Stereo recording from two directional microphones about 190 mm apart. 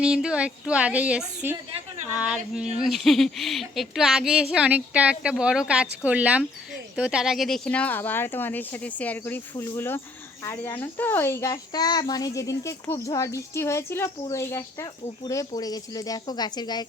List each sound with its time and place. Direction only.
0.0 s a child's voice: 5° right (ahead or behind); by 16.8 s 20° left (ahead or behind)